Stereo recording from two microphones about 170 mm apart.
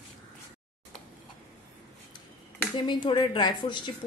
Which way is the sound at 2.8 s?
25° left (ahead or behind).